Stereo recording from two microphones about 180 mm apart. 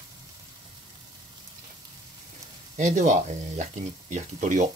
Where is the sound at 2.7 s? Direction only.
45° right (ahead or behind).